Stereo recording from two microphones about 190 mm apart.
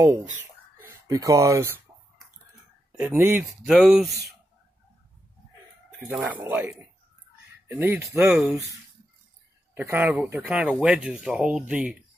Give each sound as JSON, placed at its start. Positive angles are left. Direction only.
{"t": 1.0, "sound": "speech", "side_deg": -15}
{"t": 3.0, "sound": "speech", "side_deg": -10}
{"t": 6.0, "sound": "speech", "side_deg": -5}
{"t": 9.8, "sound": "speech", "side_deg": -10}